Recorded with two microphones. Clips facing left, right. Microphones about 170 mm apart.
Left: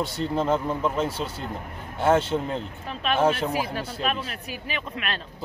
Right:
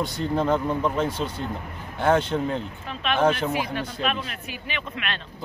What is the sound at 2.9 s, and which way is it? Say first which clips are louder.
Speech: even; 35° left (ahead or behind).